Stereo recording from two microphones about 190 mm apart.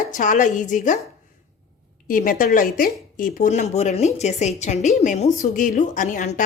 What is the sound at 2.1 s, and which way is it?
A woman's voice, 45° left (ahead or behind).